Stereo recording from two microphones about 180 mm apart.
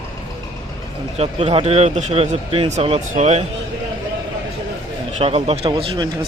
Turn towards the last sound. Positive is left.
turn(degrees=-25)  # may be behind; listen again after turning